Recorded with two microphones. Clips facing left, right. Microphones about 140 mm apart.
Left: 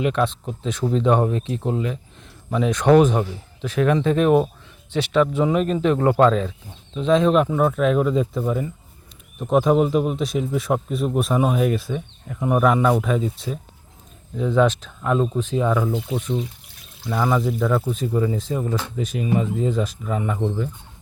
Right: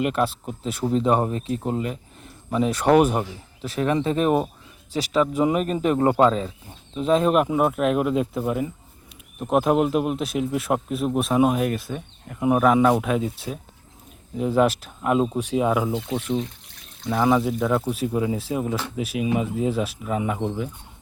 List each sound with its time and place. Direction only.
0.0 s speech: 5° right (ahead or behind)
3.6 s speech: 35° right (ahead or behind)
6.1 s speech: 10° right (ahead or behind)
15.9 s speech: centre (ahead or behind)